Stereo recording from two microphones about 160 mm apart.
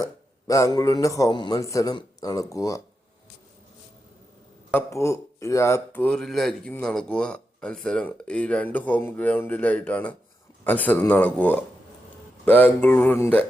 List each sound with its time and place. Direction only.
0.0 s a man's voice: 20° left (ahead or behind)
4.7 s speech: 15° left (ahead or behind)